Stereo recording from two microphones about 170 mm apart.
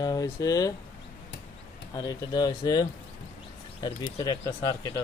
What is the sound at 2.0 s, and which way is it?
Speech, 25° left (ahead or behind).